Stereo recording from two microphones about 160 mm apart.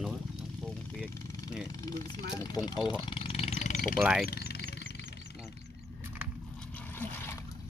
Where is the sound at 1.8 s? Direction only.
25° left (ahead or behind).